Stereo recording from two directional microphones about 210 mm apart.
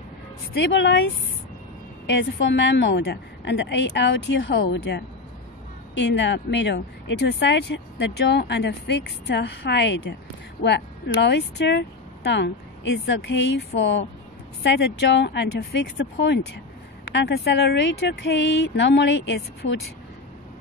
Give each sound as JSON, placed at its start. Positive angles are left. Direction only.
{"t": 0.6, "sound": "speech", "side_deg": 55}
{"t": 2.0, "sound": "speech", "side_deg": 55}